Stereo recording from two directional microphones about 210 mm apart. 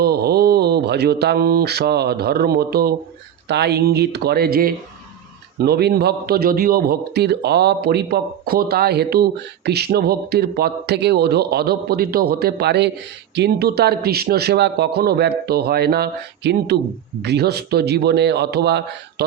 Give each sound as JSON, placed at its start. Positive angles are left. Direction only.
{"t": 0.0, "sound": "a man's voice", "side_deg": -50}